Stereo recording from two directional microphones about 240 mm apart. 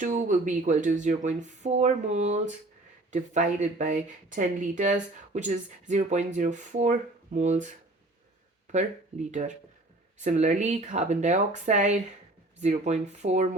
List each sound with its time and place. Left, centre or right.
0.0 s speech: right